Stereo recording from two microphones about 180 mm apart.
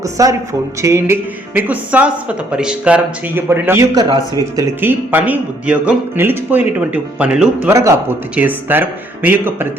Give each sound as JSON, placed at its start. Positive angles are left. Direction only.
{"t": 0.0, "sound": "speech", "side_deg": -20}
{"t": 7.7, "sound": "speech", "side_deg": -15}